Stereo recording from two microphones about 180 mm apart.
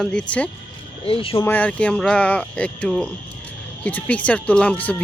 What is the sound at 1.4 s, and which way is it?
Speech, 10° left (ahead or behind).